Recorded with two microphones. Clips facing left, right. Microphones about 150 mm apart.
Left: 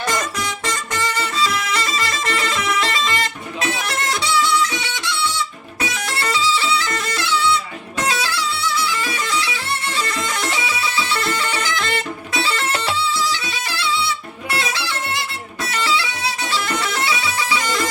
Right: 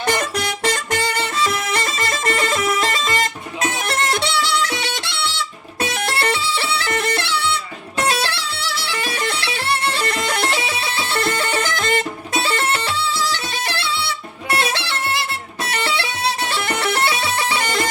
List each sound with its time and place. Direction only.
0.1 s music: 65° right (ahead or behind)
8.0 s bagpipes: 65° right (ahead or behind)
13.3 s music: 55° right (ahead or behind)
15.6 s bagpipes: 60° right (ahead or behind)